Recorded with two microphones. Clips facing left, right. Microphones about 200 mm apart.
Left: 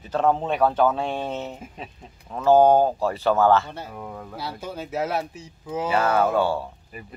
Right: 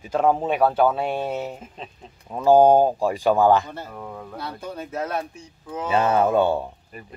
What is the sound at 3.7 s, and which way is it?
Speech, 5° left (ahead or behind).